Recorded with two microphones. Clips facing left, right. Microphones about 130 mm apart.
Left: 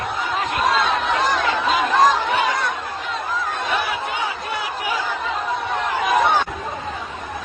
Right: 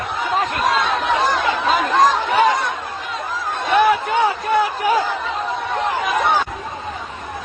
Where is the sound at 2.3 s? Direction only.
45° right (ahead or behind).